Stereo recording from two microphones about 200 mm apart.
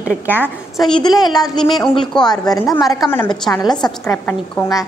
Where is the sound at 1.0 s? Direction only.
20° left (ahead or behind).